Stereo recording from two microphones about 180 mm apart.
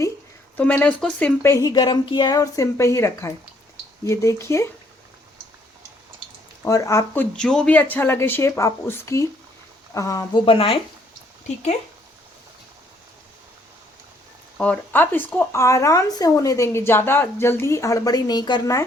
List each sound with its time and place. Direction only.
0.5 s speech: 10° left (ahead or behind)
6.7 s speech: 20° left (ahead or behind)
10.4 s speech: 30° left (ahead or behind)
14.6 s speech: 10° left (ahead or behind)